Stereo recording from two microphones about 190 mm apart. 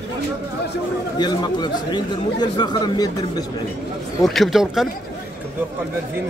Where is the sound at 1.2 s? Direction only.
20° left (ahead or behind).